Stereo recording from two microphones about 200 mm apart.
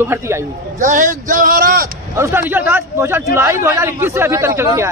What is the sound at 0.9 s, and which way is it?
Speech, 40° right (ahead or behind).